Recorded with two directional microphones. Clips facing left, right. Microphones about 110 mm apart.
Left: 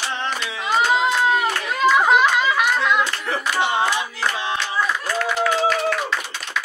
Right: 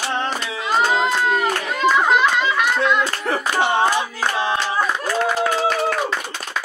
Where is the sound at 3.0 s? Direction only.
40° right (ahead or behind).